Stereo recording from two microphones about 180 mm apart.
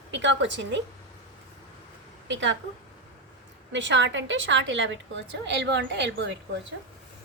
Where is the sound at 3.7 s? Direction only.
80° right.